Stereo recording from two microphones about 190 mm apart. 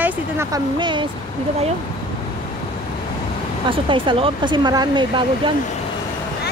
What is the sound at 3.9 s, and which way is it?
Speech, 25° right (ahead or behind).